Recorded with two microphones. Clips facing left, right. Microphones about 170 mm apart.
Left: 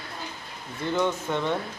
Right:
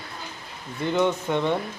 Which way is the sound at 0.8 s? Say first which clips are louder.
Right 3 dB; 15° right (ahead or behind).